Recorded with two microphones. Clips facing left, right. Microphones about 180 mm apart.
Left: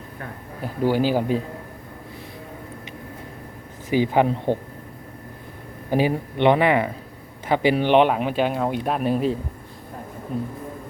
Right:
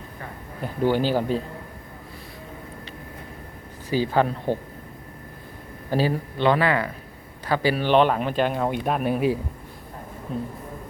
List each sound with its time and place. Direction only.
0.6 s speech: 10° left (ahead or behind)
3.8 s speech: 15° left (ahead or behind)
5.9 s speech: 15° left (ahead or behind); by 9.4 s 5° right (ahead or behind)